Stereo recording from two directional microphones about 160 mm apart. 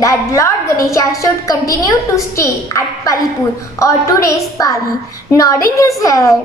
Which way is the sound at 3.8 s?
20° left (ahead or behind).